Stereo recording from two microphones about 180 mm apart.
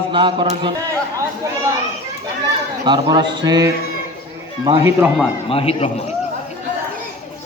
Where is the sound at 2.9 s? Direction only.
25° right (ahead or behind).